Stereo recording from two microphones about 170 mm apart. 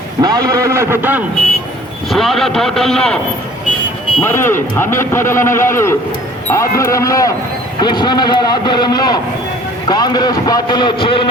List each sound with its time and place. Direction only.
0.2 s a man's voice: 20° right (ahead or behind)
2.0 s a man's voice: centre (ahead or behind)
4.2 s a man's voice: 15° left (ahead or behind)